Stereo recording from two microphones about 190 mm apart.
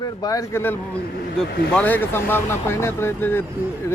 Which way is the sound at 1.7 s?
10° left (ahead or behind).